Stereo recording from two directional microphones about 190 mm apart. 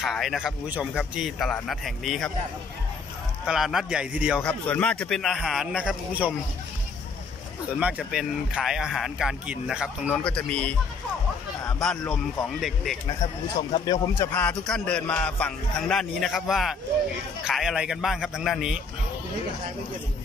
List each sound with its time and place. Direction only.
0.0 s speech: centre (ahead or behind)
3.4 s speech: centre (ahead or behind)
4.5 s speech: 5° left (ahead or behind)
7.8 s speech: 5° right (ahead or behind)
12.4 s speech: centre (ahead or behind)
13.7 s speech: 20° left (ahead or behind); by 18.8 s centre (ahead or behind)